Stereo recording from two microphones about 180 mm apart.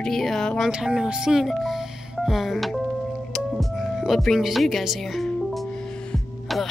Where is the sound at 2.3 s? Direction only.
Centre (ahead or behind).